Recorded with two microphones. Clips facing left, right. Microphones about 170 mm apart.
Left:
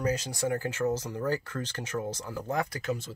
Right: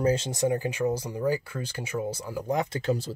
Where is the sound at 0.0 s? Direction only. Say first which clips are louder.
Right 5 dB; 25° right (ahead or behind).